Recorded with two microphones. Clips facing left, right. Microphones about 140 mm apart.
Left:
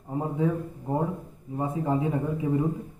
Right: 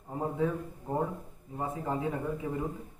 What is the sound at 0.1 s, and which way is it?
A man's voice, 15° left (ahead or behind).